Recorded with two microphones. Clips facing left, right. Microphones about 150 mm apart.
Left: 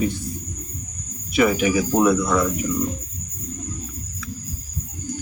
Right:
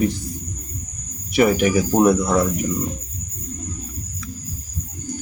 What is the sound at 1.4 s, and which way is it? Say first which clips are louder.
Speech: right 2 dB; 40° right (ahead or behind).